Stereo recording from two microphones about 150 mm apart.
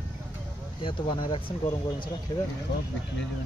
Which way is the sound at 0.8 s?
35° left (ahead or behind).